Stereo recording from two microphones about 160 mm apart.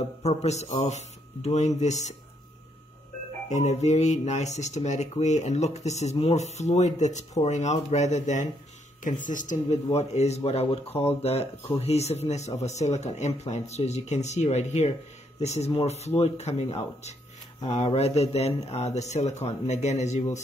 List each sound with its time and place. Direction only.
0.2 s speech: 40° left (ahead or behind)
3.4 s speech: 45° left (ahead or behind)